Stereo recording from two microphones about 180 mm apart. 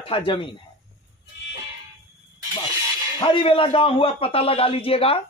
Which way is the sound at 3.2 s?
30° left (ahead or behind).